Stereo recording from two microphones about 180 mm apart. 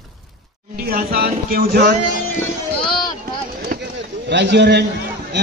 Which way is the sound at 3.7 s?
55° right (ahead or behind).